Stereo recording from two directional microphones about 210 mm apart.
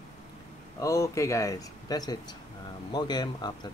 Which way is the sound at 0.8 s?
15° left (ahead or behind).